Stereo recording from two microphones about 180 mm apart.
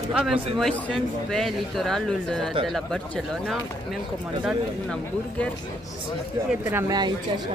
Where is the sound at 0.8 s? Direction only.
5° left (ahead or behind).